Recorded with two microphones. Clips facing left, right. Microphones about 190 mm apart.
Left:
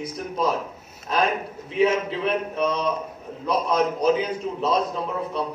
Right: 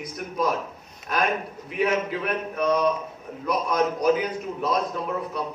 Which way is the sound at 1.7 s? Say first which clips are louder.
Left 3 dB; 25° left (ahead or behind).